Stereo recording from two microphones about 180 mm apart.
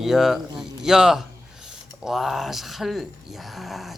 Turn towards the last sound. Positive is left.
turn(degrees=0)  # may be behind; listen again after turning